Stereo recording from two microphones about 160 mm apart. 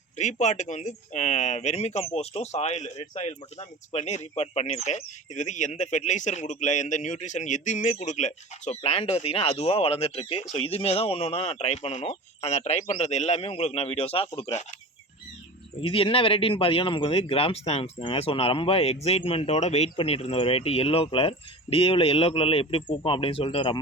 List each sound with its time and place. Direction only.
0.2 s speech: 50° left (ahead or behind)
15.8 s speech: 35° left (ahead or behind)